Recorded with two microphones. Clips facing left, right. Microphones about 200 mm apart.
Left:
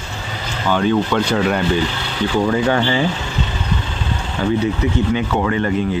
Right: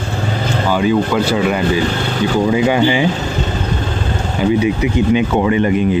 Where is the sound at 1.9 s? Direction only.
45° right (ahead or behind).